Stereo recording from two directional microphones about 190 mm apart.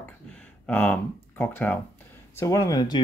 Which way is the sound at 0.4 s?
5° left (ahead or behind).